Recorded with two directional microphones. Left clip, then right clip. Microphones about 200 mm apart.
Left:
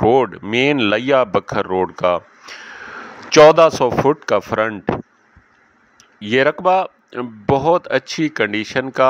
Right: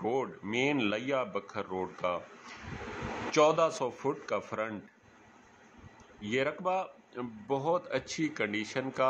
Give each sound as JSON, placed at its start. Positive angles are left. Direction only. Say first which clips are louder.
{"t": 0.0, "sound": "speech", "louder": "left 19 dB", "side_deg": 45}
{"t": 6.2, "sound": "speech", "louder": "left 17 dB", "side_deg": 50}